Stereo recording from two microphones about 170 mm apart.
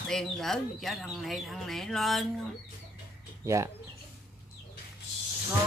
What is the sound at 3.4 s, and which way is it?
Speech, 15° right (ahead or behind).